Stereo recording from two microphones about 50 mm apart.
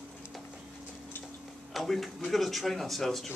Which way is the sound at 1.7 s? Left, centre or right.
Centre.